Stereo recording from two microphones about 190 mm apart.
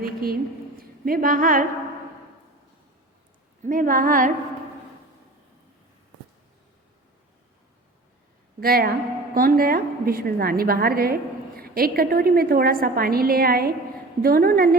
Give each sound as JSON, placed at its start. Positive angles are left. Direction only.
{"t": 0.0, "sound": "a woman's voice", "side_deg": -50}
{"t": 3.6, "sound": "a woman's voice", "side_deg": -45}
{"t": 8.6, "sound": "a woman's voice", "side_deg": -50}